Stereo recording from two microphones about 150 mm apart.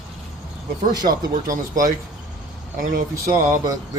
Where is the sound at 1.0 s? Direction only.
65° right (ahead or behind).